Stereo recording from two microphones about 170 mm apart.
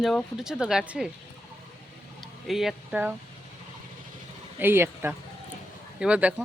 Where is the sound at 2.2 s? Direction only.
Centre (ahead or behind).